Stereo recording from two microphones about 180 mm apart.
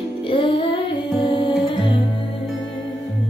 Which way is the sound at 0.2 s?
30° left (ahead or behind).